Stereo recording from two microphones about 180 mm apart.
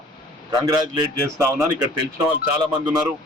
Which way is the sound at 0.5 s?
20° right (ahead or behind).